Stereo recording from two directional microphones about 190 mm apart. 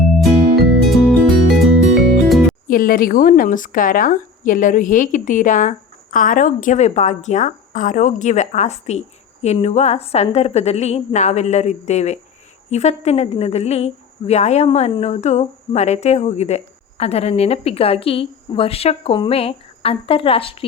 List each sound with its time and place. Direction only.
0.2 s music: centre (ahead or behind)
2.6 s speech: 45° left (ahead or behind); by 20.7 s 30° left (ahead or behind)